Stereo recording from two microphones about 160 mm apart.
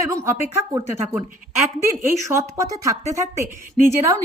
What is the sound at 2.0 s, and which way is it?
Speech, 15° right (ahead or behind).